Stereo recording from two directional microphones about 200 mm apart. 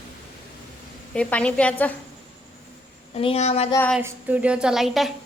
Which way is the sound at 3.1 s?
30° left (ahead or behind).